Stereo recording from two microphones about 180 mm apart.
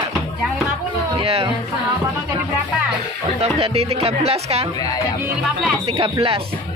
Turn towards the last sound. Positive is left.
turn(degrees=-30)  # may be behind; listen again after turning